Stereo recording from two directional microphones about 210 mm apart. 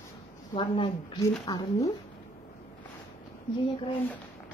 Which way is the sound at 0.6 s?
25° left (ahead or behind).